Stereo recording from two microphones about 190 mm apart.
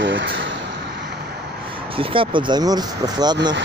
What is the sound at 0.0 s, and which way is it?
Vehicle, 75° right (ahead or behind).